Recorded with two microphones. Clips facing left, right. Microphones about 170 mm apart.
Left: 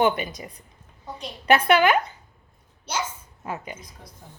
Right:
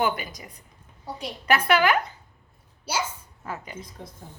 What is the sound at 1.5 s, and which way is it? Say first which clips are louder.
Speech: left 3 dB; 25° left (ahead or behind).